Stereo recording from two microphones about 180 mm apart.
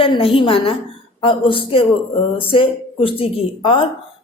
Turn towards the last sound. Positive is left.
turn(degrees=30)  # may be behind; listen again after turning